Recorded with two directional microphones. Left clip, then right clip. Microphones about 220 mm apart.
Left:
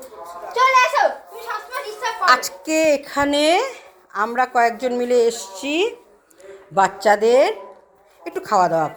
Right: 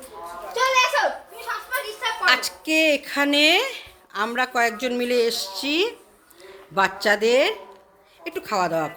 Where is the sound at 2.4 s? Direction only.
15° right (ahead or behind).